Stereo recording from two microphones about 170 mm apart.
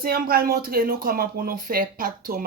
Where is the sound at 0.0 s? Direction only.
60° right (ahead or behind).